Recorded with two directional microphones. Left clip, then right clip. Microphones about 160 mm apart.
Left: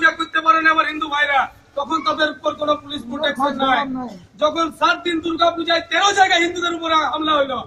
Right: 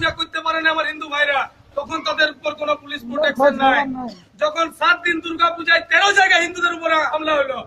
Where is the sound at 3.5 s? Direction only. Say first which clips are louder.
Right 2 dB; 40° right (ahead or behind).